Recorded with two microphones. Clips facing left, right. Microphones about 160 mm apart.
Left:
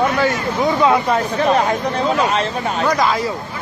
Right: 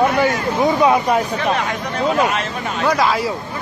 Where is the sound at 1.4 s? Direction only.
35° left (ahead or behind).